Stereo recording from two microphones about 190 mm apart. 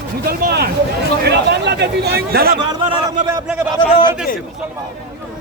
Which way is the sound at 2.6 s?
25° right (ahead or behind).